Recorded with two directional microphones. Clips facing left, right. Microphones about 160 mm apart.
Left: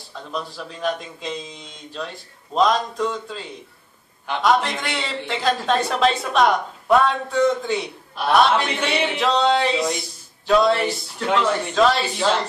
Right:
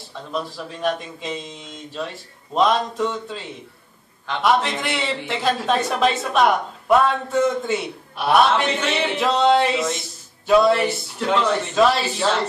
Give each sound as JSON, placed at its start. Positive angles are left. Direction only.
{"t": 0.3, "sound": "a man's voice", "side_deg": 0}